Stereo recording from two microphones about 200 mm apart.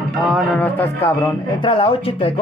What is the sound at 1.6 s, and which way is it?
Speech, 25° left (ahead or behind).